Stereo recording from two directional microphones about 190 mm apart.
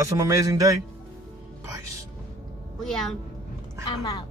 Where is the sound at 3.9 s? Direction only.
20° left (ahead or behind).